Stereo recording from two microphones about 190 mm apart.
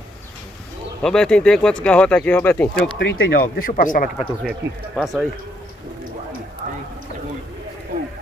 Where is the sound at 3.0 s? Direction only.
75° left (ahead or behind); by 4.1 s 45° left (ahead or behind).